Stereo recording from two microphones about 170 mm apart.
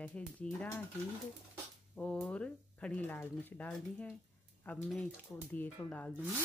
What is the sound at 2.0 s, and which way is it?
Speech, 5° left (ahead or behind).